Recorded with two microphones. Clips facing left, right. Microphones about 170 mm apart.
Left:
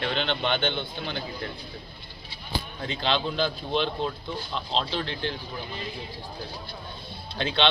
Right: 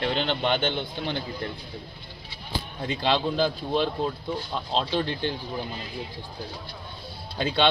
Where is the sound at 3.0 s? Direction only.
10° right (ahead or behind).